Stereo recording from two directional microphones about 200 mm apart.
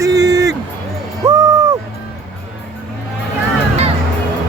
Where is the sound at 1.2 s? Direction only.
15° right (ahead or behind).